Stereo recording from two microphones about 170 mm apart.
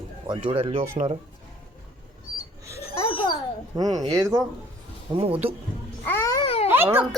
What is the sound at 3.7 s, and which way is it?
Speech, 20° right (ahead or behind).